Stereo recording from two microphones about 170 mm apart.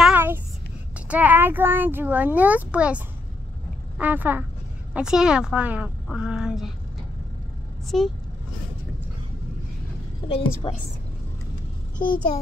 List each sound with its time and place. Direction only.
0.0 s a sound: 10° right (ahead or behind)
0.9 s a child's voice: 10° right (ahead or behind)
4.0 s a child's voice: 10° right (ahead or behind)
7.9 s a woman's voice: centre (ahead or behind)
10.2 s a woman's voice: 30° left (ahead or behind)